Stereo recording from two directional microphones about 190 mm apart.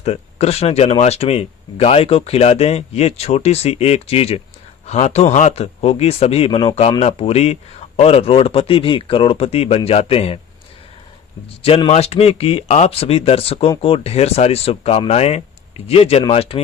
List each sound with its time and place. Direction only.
0.0 s speech: 35° left (ahead or behind)
11.4 s speech: 30° left (ahead or behind)